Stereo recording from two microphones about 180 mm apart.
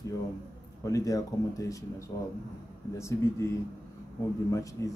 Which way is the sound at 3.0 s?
15° left (ahead or behind).